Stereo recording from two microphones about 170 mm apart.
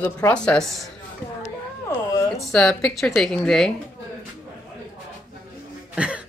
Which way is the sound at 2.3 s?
5° left (ahead or behind).